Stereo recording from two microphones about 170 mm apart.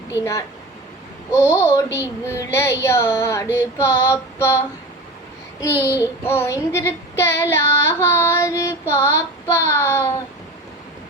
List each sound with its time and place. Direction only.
1.3 s child singing: 15° left (ahead or behind)
5.7 s child singing: 15° right (ahead or behind)
6.2 s child singing: 15° left (ahead or behind)